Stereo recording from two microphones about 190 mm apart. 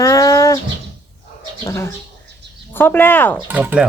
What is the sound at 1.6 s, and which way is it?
Speech, 15° left (ahead or behind).